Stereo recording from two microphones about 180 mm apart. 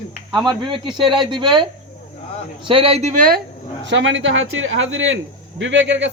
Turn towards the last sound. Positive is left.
turn(degrees=-90)